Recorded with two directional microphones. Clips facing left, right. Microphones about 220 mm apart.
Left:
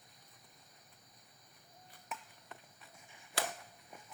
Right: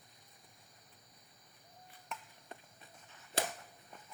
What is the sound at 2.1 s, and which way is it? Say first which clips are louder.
Chop: even; 5° left (ahead or behind).